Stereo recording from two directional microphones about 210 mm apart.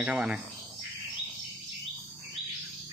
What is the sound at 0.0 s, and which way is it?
Speech, 5° right (ahead or behind).